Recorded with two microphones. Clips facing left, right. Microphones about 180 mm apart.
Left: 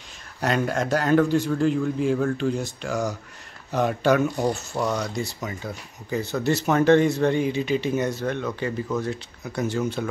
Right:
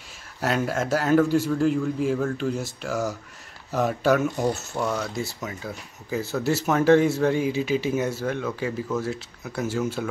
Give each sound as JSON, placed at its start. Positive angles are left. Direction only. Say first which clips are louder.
{"t": 0.4, "sound": "speech", "louder": "left 1 dB", "side_deg": -5}